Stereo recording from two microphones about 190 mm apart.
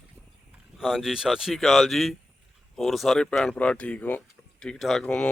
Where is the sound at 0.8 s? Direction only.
Centre (ahead or behind).